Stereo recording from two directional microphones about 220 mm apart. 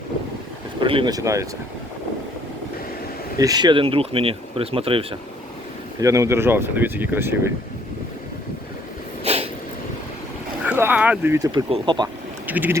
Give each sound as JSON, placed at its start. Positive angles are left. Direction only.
{"t": 0.8, "sound": "speech", "side_deg": -25}
{"t": 3.3, "sound": "speech", "side_deg": -15}
{"t": 6.0, "sound": "speech", "side_deg": -15}
{"t": 9.2, "sound": "a sound", "side_deg": -30}
{"t": 10.7, "sound": "speech", "side_deg": -10}
{"t": 12.5, "sound": "speech", "side_deg": -10}